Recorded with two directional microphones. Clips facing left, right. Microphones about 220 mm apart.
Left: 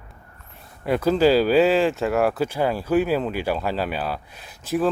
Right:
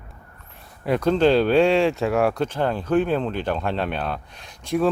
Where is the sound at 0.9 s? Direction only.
5° left (ahead or behind).